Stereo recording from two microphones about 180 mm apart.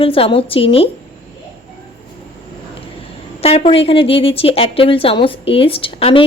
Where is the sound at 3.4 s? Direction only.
35° left (ahead or behind).